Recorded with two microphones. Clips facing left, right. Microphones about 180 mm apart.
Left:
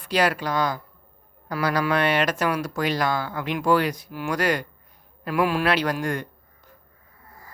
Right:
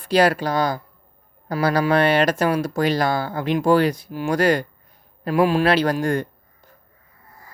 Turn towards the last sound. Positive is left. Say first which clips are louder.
# right 5 dB
turn(degrees=-30)  # may be behind; listen again after turning